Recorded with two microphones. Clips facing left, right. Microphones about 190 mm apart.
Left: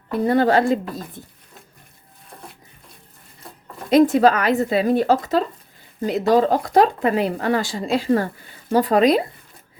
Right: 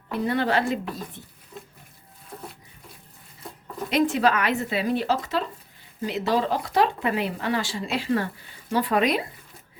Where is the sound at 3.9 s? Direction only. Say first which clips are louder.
Left 8 dB; 40° left (ahead or behind).